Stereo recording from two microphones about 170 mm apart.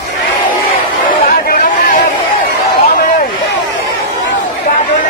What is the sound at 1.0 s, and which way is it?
Chatter, 50° left (ahead or behind).